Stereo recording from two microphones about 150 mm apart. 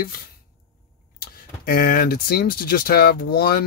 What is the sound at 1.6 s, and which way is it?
Speech, 80° left.